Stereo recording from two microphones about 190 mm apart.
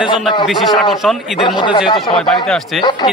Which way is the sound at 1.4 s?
25° left (ahead or behind).